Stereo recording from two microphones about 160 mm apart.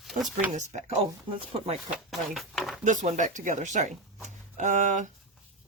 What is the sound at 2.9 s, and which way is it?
Speech, 50° right (ahead or behind).